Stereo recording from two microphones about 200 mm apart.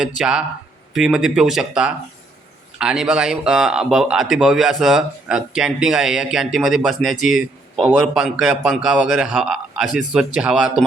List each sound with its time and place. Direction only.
0.0 s a man's voice: 5° right (ahead or behind)